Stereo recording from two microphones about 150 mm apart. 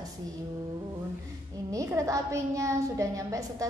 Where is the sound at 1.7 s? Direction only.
20° right (ahead or behind).